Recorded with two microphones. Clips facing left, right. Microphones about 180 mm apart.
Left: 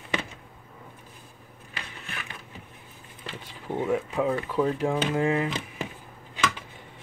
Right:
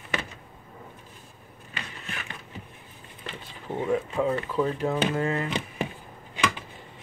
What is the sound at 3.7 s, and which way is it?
Speech, 5° left (ahead or behind).